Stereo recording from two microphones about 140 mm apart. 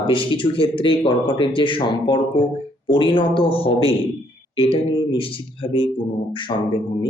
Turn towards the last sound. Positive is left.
turn(degrees=40)  # may be behind; listen again after turning